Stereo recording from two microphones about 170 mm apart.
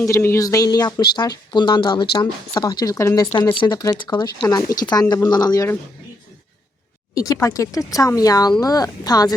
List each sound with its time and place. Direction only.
0.0 s speech: 15° left (ahead or behind)
3.3 s speech: 30° left (ahead or behind)
7.1 s speech: 20° left (ahead or behind)